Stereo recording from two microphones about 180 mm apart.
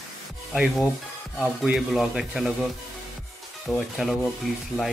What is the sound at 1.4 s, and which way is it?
Speech, centre (ahead or behind).